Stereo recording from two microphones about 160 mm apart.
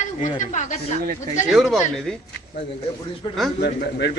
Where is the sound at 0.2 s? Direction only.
50° left (ahead or behind).